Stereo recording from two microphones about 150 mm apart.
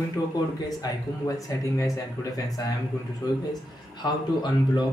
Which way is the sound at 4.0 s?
30° left (ahead or behind).